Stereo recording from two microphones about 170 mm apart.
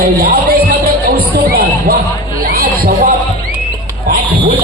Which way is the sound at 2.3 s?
60° right (ahead or behind).